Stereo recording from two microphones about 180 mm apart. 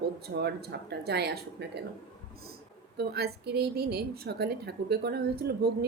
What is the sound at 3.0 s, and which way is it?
A woman's voice, 60° right (ahead or behind).